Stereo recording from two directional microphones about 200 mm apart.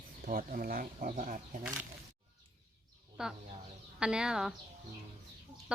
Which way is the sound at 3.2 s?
5° right (ahead or behind).